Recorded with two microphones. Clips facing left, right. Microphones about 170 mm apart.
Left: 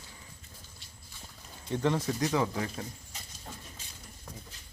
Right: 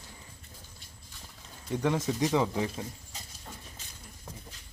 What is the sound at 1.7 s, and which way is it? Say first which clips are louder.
Speech: even; 10° right (ahead or behind).